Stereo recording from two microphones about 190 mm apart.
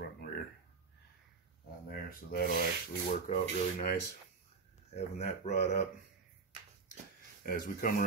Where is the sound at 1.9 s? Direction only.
50° left (ahead or behind).